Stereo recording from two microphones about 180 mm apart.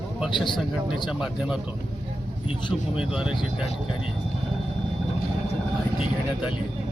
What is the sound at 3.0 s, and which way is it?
Speech, 5° right (ahead or behind).